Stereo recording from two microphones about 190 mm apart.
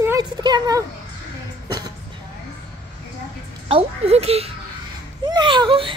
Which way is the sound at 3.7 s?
30° right (ahead or behind).